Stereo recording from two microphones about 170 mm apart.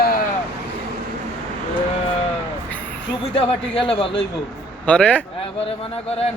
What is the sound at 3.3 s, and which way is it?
Speech, 35° left (ahead or behind).